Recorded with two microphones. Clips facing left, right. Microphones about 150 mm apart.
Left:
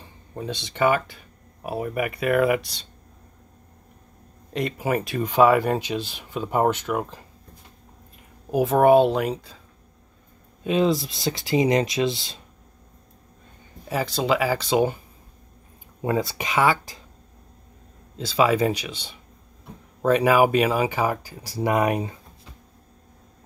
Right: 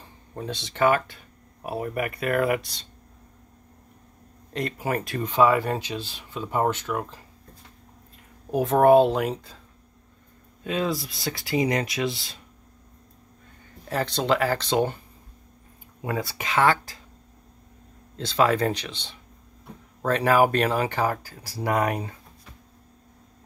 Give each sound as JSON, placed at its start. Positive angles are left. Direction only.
{"t": 0.0, "sound": "speech", "side_deg": 0}
{"t": 4.6, "sound": "speech", "side_deg": 5}
{"t": 8.5, "sound": "speech", "side_deg": 5}
{"t": 10.6, "sound": "speech", "side_deg": 20}
{"t": 13.8, "sound": "speech", "side_deg": 5}
{"t": 16.0, "sound": "speech", "side_deg": 25}
{"t": 18.1, "sound": "speech", "side_deg": 5}